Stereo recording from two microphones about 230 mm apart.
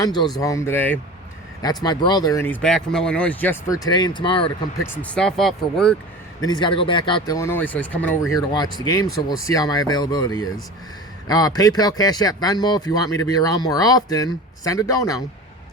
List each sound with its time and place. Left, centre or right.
0.0 s speech: centre
4.9 s speech: centre
6.4 s speech: centre